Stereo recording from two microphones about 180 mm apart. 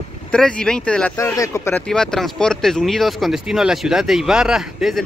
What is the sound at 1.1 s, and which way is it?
Speech, 20° left (ahead or behind).